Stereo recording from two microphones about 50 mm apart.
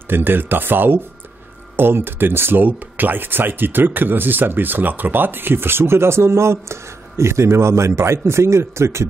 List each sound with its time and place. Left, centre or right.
0.1 s speech: right